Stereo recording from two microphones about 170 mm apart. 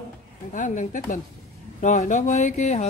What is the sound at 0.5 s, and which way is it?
Speech, 50° left (ahead or behind).